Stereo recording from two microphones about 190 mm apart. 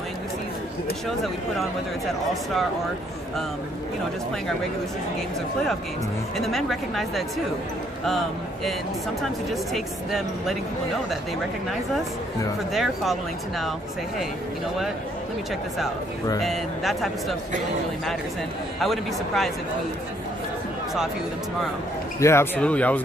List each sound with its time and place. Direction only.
1.0 s speech: centre (ahead or behind)
6.3 s speech: centre (ahead or behind)
9.5 s speech: centre (ahead or behind)
12.7 s speech: centre (ahead or behind)
16.4 s speech: centre (ahead or behind)
18.8 s speech: centre (ahead or behind)
22.2 s speech: 15° left (ahead or behind)